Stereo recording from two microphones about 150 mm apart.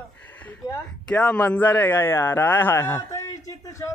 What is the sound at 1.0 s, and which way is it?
Speech, 10° left (ahead or behind).